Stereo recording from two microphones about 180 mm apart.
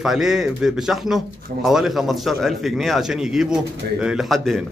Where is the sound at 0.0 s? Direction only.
Centre (ahead or behind).